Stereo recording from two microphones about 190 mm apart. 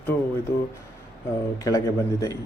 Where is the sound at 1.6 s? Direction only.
20° left (ahead or behind).